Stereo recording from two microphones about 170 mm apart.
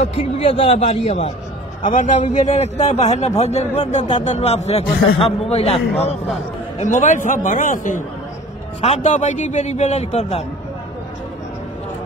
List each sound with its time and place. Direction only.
0.0 s a man's voice: 35° left (ahead or behind)
1.8 s a man's voice: 50° left (ahead or behind)